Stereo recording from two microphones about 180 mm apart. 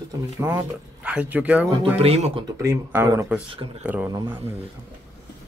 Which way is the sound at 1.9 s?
35° right (ahead or behind).